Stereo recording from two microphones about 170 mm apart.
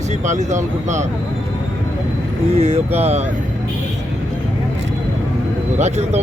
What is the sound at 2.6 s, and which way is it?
Speech, 40° right (ahead or behind).